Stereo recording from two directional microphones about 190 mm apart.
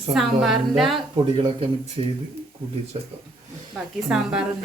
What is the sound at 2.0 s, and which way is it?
Speech, 25° right (ahead or behind).